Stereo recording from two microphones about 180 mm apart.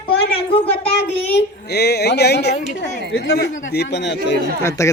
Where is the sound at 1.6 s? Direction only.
65° left (ahead or behind).